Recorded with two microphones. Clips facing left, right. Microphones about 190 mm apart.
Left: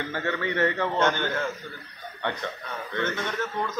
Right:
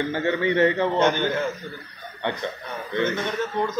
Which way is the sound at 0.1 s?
20° right (ahead or behind).